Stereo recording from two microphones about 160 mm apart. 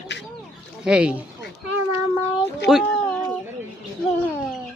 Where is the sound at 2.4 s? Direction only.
Centre (ahead or behind).